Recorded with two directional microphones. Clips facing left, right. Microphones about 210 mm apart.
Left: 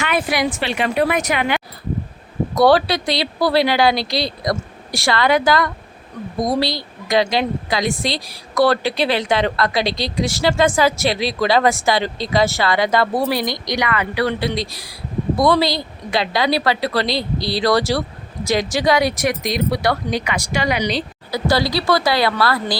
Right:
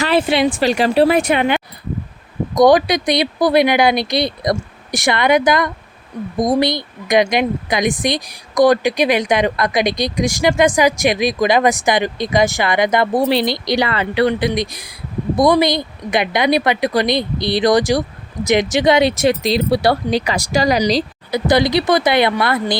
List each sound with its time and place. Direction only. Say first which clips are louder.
0.0 s speech: right 5 dB; 30° right (ahead or behind)
0.6 s speech: right 6 dB; 40° right (ahead or behind)
21.2 s speech: right 4 dB; 20° right (ahead or behind)